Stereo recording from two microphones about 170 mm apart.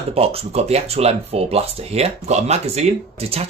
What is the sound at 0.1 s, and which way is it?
Speech, 35° right (ahead or behind).